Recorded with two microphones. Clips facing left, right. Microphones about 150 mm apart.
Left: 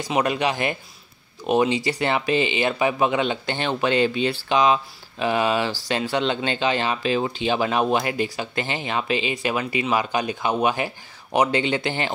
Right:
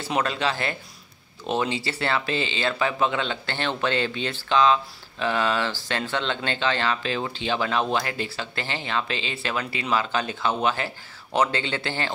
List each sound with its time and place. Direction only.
0.0 s speech: 15° left (ahead or behind)